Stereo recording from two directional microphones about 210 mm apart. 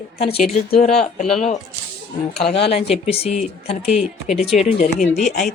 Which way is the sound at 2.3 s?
Centre (ahead or behind).